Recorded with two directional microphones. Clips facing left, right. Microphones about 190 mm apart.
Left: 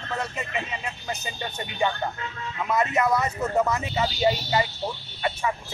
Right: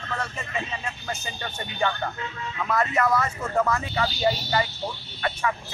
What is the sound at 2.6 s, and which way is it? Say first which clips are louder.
Speech: left 1 dB; 20° left (ahead or behind).